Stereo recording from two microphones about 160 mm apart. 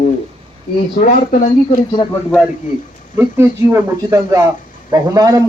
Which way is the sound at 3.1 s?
15° right (ahead or behind).